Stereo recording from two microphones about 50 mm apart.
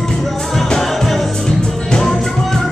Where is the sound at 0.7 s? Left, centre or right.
Centre.